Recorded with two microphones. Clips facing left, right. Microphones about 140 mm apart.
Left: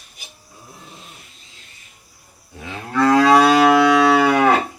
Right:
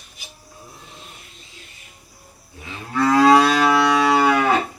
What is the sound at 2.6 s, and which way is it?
Moo, 65° left (ahead or behind).